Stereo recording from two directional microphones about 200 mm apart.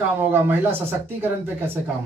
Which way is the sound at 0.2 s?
10° right (ahead or behind).